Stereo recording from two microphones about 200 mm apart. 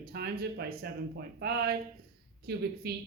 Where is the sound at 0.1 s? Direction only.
50° right (ahead or behind).